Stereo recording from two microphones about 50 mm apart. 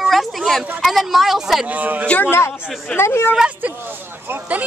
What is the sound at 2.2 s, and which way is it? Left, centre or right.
A man's voice, left.